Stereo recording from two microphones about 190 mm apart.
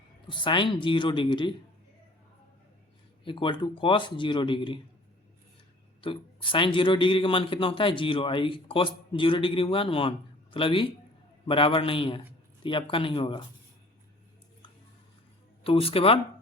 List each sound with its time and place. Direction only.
0.3 s speech: 25° left (ahead or behind)
3.2 s speech: 25° left (ahead or behind)
6.0 s speech: 25° left (ahead or behind)
15.6 s speech: 30° left (ahead or behind)